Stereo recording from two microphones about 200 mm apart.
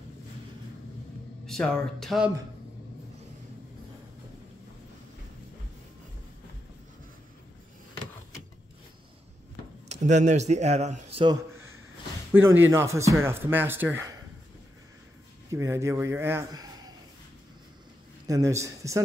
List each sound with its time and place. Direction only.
1.4 s speech: 5° left (ahead or behind)
9.8 s speech: 35° right (ahead or behind)
12.3 s speech: 10° right (ahead or behind)
15.5 s speech: 15° right (ahead or behind)
18.2 s speech: 15° right (ahead or behind)